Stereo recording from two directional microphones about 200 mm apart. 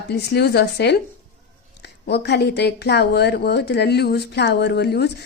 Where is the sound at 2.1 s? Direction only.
55° left (ahead or behind).